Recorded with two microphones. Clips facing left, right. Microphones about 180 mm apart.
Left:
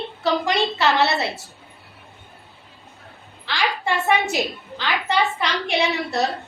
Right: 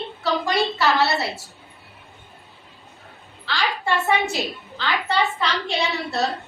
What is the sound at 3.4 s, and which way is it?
A woman's voice, 15° left (ahead or behind).